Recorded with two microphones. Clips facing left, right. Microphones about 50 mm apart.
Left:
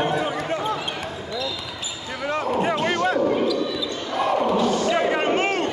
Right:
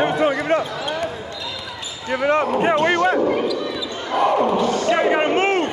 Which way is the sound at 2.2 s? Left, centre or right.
Right.